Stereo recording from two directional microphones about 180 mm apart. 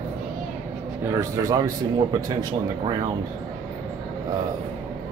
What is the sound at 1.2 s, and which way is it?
Speech, 20° right (ahead or behind).